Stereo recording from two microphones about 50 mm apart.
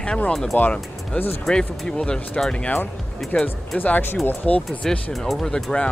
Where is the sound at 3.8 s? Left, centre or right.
Left.